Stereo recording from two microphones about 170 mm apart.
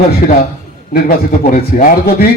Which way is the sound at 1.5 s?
55° left (ahead or behind).